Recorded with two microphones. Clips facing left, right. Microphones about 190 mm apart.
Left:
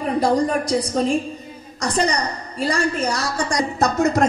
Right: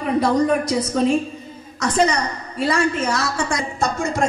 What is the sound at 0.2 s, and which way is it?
Speech, 35° left (ahead or behind).